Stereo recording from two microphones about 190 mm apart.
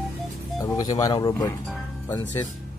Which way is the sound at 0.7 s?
20° left (ahead or behind).